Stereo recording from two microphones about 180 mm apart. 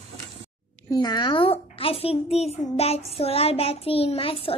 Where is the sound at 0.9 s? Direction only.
25° left (ahead or behind).